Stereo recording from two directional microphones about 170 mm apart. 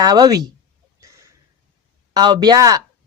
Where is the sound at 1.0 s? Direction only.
20° right (ahead or behind).